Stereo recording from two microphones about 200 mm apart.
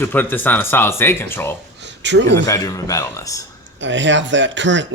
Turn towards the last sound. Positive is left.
turn(degrees=-65)  # may be behind; listen again after turning